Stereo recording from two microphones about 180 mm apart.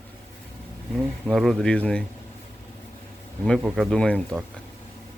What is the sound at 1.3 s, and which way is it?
Speech, centre (ahead or behind).